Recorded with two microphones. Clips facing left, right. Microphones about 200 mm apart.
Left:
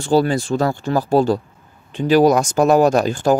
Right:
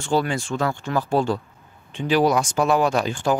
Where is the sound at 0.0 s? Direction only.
35° left (ahead or behind).